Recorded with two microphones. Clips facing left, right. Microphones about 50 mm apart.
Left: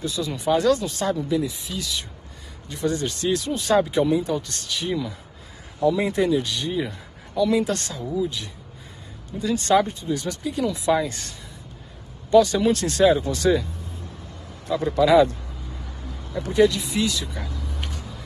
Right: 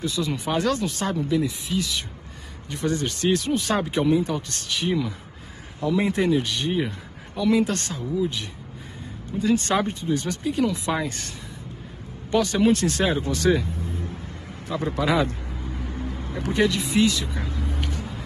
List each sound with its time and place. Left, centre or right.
0.0 s a woman's voice: right
9.4 s speech: right
14.7 s a man's voice: right
17.8 s vehicle: right